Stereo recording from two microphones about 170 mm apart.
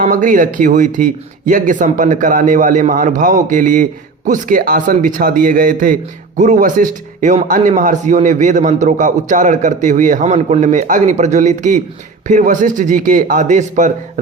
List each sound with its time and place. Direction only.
0.0 s a man's voice: 50° right (ahead or behind)